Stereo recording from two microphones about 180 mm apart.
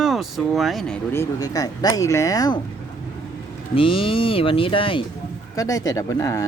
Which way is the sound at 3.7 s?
30° left (ahead or behind).